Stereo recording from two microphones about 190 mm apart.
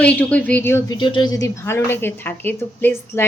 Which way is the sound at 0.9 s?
25° left (ahead or behind).